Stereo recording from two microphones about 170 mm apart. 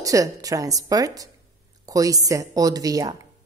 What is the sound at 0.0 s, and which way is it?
A woman's voice, 20° right (ahead or behind).